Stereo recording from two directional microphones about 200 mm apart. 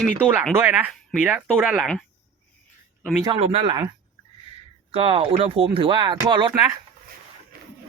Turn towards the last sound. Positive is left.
turn(degrees=-15)  # may be behind; listen again after turning